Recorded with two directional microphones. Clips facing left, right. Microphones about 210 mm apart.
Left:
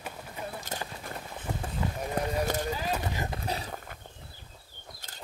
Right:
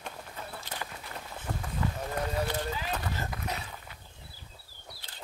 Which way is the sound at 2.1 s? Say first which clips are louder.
Left 3 dB; 45° left (ahead or behind).